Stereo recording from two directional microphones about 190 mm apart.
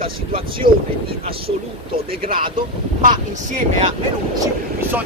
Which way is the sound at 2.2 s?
30° right (ahead or behind).